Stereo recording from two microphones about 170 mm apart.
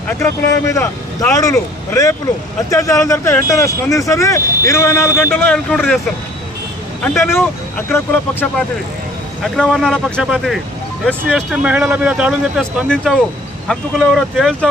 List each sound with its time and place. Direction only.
0.1 s speech: 15° left (ahead or behind)
7.0 s speech: 10° left (ahead or behind)
9.4 s speech: centre (ahead or behind)